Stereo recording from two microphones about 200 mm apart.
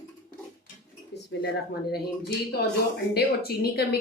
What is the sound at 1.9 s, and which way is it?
A woman's voice, 55° left (ahead or behind).